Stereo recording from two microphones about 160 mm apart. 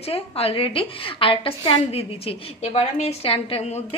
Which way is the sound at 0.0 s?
40° left (ahead or behind).